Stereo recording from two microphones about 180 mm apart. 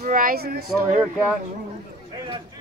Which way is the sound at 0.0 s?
50° right (ahead or behind).